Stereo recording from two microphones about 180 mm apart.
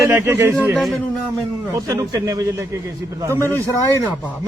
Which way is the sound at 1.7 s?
20° right (ahead or behind).